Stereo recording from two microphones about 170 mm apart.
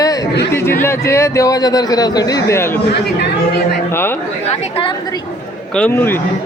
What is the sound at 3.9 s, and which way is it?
Speech, 15° left (ahead or behind).